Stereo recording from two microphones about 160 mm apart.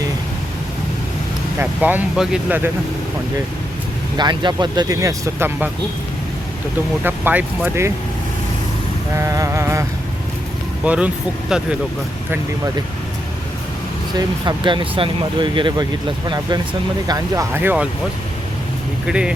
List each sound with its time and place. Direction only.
1.5 s speech: 10° right (ahead or behind)
4.2 s speech: 30° right (ahead or behind)
7.0 s speech: 10° right (ahead or behind)
9.1 s speech: 20° right (ahead or behind)
10.8 s speech: 5° right (ahead or behind)
14.2 s speech: 30° right (ahead or behind); by 17.8 s 10° right (ahead or behind)
19.0 s speech: 5° right (ahead or behind)